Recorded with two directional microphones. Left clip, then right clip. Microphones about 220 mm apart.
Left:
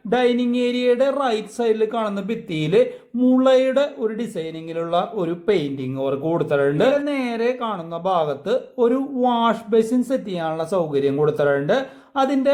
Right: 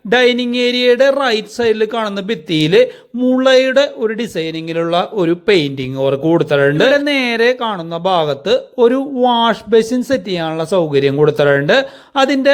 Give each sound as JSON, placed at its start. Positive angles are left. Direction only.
{"t": 0.1, "sound": "speech", "side_deg": -25}